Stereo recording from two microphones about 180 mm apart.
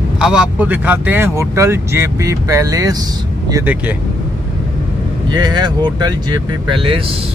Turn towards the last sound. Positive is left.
turn(degrees=-30)  # may be behind; listen again after turning